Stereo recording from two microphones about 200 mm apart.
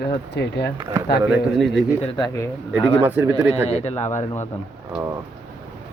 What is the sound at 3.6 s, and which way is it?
Speech, 35° left (ahead or behind).